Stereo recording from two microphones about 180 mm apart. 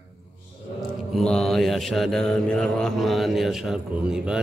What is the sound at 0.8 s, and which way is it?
Mantra, centre (ahead or behind).